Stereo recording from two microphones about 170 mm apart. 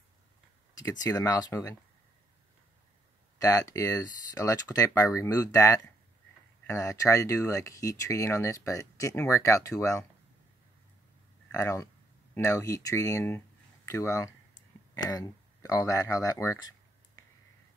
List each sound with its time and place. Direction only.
0.7 s speech: 20° left (ahead or behind)
3.3 s speech: 20° left (ahead or behind)
11.5 s speech: 20° left (ahead or behind)